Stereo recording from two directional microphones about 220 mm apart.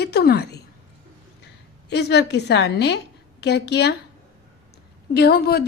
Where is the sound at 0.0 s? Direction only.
45° left (ahead or behind).